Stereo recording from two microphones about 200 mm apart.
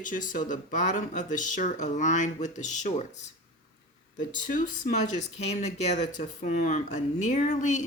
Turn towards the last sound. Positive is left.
turn(degrees=35)  # may be behind; listen again after turning